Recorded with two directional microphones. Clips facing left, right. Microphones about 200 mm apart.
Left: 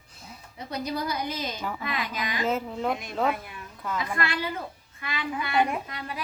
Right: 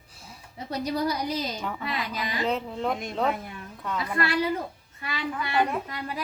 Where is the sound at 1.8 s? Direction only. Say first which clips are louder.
Even; 35° right (ahead or behind).